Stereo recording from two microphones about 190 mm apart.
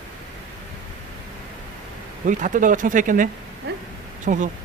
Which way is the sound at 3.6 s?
60° right (ahead or behind).